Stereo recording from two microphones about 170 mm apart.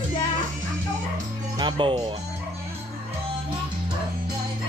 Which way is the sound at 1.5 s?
25° right (ahead or behind).